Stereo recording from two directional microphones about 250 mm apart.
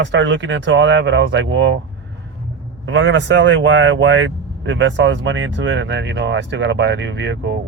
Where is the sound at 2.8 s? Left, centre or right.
Right.